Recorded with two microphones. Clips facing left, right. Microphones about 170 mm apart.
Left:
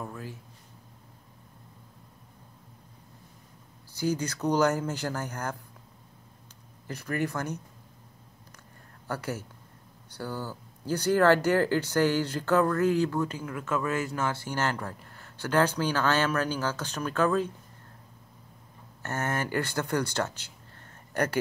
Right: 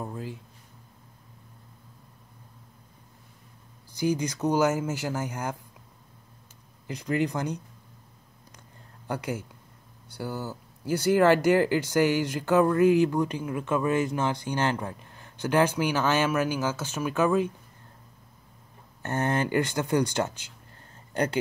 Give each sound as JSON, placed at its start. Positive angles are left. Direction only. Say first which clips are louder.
{"t": 0.0, "sound": "a sound", "louder": "right 3 dB", "side_deg": -20}
{"t": 4.0, "sound": "speech", "louder": "right 2 dB", "side_deg": -15}
{"t": 6.9, "sound": "speech", "louder": "right 4 dB", "side_deg": -15}
{"t": 9.0, "sound": "speech", "louder": "right 2 dB", "side_deg": -15}
{"t": 19.0, "sound": "speech", "louder": "right 4 dB", "side_deg": -20}